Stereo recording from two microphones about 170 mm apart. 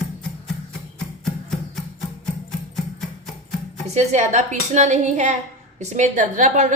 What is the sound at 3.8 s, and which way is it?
A woman's voice, 40° right (ahead or behind).